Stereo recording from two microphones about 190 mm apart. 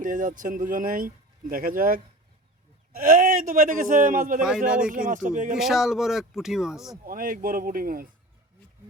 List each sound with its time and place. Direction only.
0.0 s speech: 45° right (ahead or behind)
5.5 s speech: centre (ahead or behind)
7.0 s speech: 50° right (ahead or behind)